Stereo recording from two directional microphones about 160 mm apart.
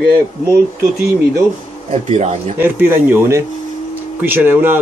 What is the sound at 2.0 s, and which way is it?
Speech, 40° right (ahead or behind).